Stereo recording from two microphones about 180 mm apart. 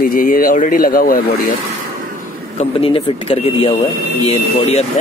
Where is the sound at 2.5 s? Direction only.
30° left (ahead or behind).